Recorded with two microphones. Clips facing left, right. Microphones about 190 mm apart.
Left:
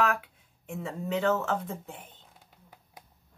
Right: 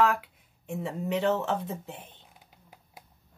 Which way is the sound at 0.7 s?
20° right (ahead or behind).